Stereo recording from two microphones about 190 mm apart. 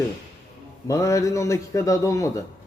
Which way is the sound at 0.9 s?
15° left (ahead or behind).